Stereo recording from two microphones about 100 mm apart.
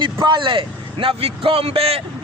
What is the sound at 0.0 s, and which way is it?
A man's voice, 50° right (ahead or behind).